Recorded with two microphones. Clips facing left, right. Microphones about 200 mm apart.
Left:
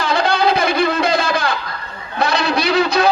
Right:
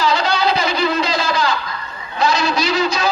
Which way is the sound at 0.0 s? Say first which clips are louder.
Left 1 dB; 55° left (ahead or behind).